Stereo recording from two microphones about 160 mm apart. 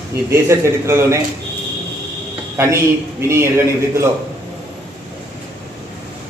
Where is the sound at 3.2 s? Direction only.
15° right (ahead or behind).